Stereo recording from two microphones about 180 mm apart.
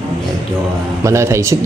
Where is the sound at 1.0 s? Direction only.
15° right (ahead or behind).